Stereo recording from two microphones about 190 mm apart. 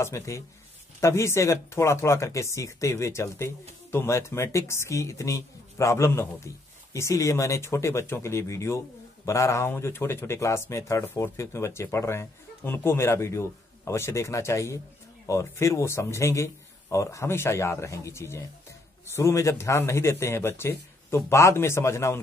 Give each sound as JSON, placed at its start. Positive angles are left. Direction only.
{"t": 0.0, "sound": "speech", "side_deg": 15}